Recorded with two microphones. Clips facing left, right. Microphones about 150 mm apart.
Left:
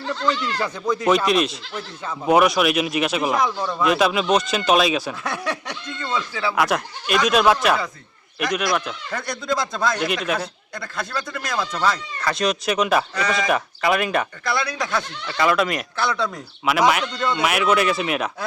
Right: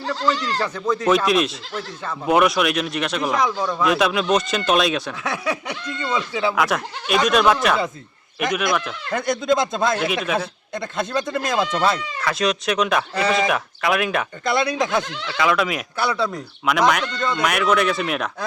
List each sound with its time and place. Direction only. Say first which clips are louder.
0.0 s speech: right 1 dB; 35° right (ahead or behind)
0.6 s speech: even; 10° left (ahead or behind)
1.1 s speech: right 1 dB; centre (ahead or behind); by 6.5 s 20° right (ahead or behind)
6.6 s speech: even; centre (ahead or behind)
9.1 s speech: right 6 dB; 20° right (ahead or behind)
10.2 s speech: right 1 dB; 5° right (ahead or behind)
10.8 s speech: right 5 dB; 20° right (ahead or behind)
12.2 s speech: even; centre (ahead or behind)
13.1 s speech: right 3 dB; 25° right (ahead or behind)
13.5 s speech: left 1 dB; centre (ahead or behind)
14.4 s speech: right 4 dB; 20° right (ahead or behind)
15.3 s speech: left 1 dB; centre (ahead or behind)